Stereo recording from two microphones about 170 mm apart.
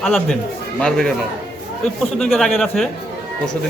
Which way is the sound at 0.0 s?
Centre (ahead or behind).